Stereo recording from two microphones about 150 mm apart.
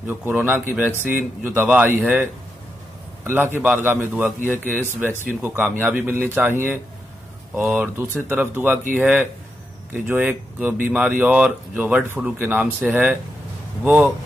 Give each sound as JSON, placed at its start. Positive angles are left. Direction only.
{"t": 0.0, "sound": "speech", "side_deg": -15}
{"t": 3.3, "sound": "speech", "side_deg": -15}
{"t": 5.4, "sound": "speech", "side_deg": -15}